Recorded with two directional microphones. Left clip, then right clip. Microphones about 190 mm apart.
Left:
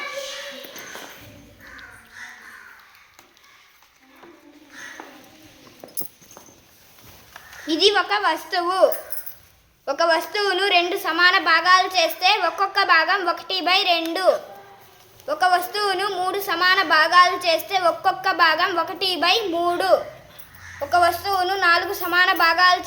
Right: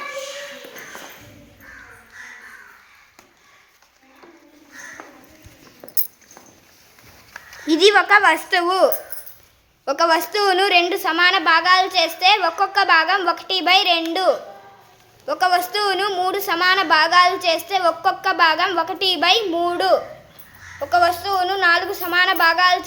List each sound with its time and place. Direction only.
7.7 s a woman's voice: 30° right (ahead or behind); by 22.8 s 10° right (ahead or behind)